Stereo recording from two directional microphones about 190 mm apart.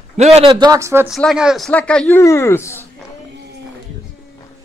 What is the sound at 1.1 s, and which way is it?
Speech, centre (ahead or behind).